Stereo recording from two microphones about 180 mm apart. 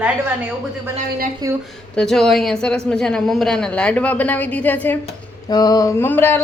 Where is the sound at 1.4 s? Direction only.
20° right (ahead or behind).